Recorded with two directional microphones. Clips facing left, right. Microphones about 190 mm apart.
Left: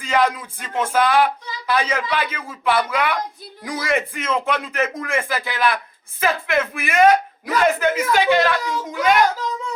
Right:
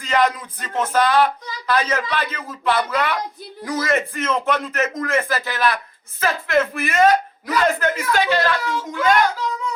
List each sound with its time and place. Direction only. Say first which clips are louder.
0.0 s speech: even; 10° left (ahead or behind)